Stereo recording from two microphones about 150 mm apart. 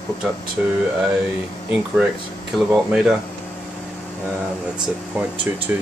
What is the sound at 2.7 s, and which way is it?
Speech, 5° right (ahead or behind).